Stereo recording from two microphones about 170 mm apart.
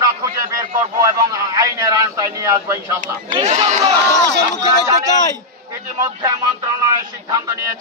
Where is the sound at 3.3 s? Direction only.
40° right (ahead or behind).